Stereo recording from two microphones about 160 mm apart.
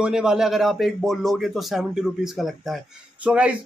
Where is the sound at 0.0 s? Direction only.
5° right (ahead or behind).